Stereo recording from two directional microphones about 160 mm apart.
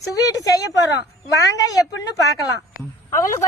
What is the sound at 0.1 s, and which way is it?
A woman's voice, 20° left (ahead or behind).